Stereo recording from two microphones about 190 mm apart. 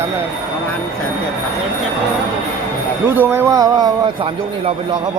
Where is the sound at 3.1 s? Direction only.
15° right (ahead or behind).